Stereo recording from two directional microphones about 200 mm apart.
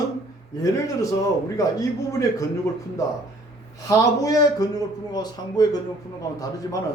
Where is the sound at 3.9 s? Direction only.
15° left (ahead or behind).